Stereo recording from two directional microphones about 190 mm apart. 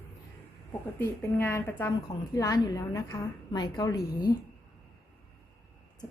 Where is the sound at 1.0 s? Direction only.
15° left (ahead or behind).